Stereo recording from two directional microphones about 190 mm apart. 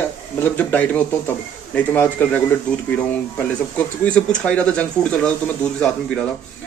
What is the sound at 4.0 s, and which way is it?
A man's voice, 5° left (ahead or behind).